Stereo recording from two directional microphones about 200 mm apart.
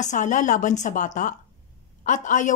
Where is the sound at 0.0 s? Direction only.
40° left (ahead or behind).